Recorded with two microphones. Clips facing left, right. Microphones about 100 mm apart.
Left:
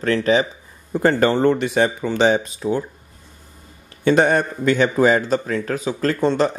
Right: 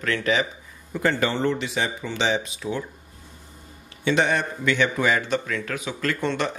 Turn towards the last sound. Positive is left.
turn(degrees=35)  # may be behind; listen again after turning